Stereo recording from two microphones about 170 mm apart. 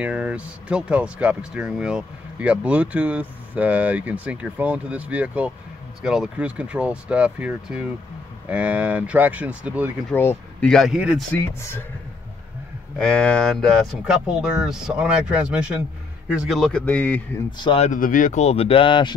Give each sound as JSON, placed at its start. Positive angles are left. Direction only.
{"t": 0.0, "sound": "speech", "side_deg": -5}
{"t": 10.1, "sound": "speech", "side_deg": 10}
{"t": 11.3, "sound": "speech", "side_deg": 15}
{"t": 13.0, "sound": "speech", "side_deg": 5}
{"t": 17.5, "sound": "speech", "side_deg": 30}
{"t": 17.8, "sound": "speech", "side_deg": 50}